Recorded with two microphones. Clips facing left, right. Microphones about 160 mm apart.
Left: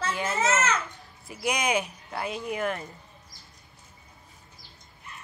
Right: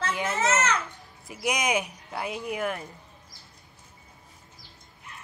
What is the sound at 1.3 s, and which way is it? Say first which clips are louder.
Speech: even; 15° right (ahead or behind).